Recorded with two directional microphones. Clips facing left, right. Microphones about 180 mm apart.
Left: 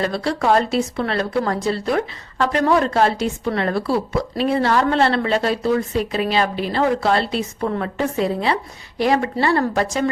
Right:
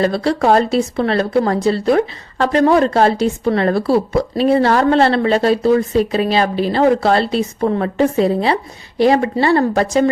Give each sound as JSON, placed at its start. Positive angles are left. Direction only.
{"t": 0.0, "sound": "a woman's voice", "side_deg": -35}